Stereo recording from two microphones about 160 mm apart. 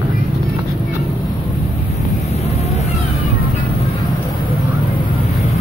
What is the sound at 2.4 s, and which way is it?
Vehicle, 40° left (ahead or behind).